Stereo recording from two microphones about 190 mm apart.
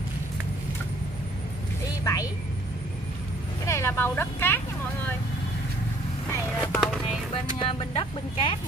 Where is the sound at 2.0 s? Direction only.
15° left (ahead or behind).